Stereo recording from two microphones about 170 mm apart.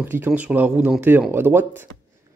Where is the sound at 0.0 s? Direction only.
10° right (ahead or behind).